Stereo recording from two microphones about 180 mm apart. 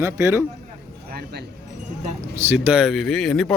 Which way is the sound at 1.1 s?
60° right (ahead or behind).